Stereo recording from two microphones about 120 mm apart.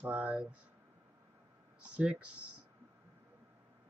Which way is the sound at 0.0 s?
10° right (ahead or behind).